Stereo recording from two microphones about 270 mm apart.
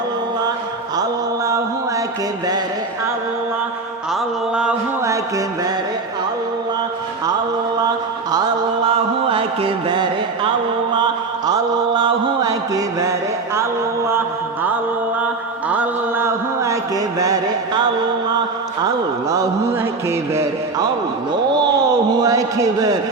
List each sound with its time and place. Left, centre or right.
4.1 s a sound: centre
9.2 s music: right
11.4 s mantra: centre
14.1 s mantra: centre
15.7 s mantra: centre
19.3 s mantra: centre
22.1 s a man's voice: centre